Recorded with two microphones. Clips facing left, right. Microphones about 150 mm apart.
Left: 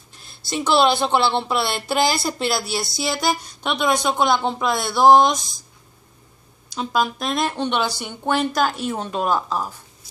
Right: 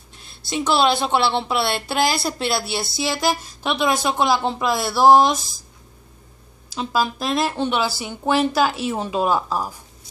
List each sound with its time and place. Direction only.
0.1 s speech: centre (ahead or behind)
6.7 s speech: 5° right (ahead or behind)